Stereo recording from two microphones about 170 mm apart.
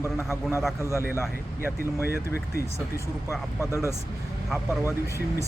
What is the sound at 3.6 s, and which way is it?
Speech, 15° left (ahead or behind).